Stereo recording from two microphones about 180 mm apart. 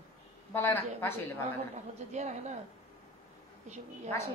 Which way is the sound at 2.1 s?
40° right (ahead or behind).